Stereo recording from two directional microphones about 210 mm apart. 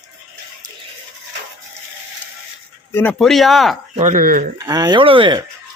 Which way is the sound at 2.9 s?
5° left (ahead or behind).